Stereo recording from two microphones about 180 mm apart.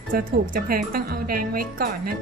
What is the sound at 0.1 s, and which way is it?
Speech, 50° right (ahead or behind).